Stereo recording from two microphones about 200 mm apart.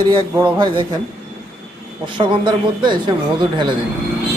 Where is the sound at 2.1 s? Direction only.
25° right (ahead or behind).